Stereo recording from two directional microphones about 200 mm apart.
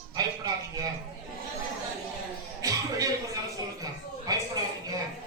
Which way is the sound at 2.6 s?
15° right (ahead or behind).